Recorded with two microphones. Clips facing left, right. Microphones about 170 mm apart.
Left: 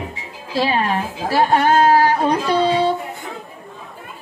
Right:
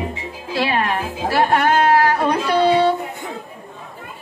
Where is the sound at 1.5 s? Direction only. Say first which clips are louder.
Left 2 dB; 30° left (ahead or behind).